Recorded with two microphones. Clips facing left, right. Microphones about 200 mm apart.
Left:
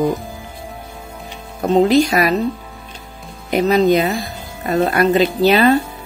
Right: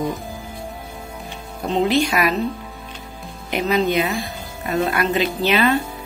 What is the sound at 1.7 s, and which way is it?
Speech, 40° left (ahead or behind).